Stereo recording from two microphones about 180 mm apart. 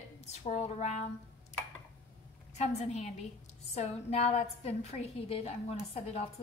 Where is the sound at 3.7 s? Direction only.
35° left (ahead or behind).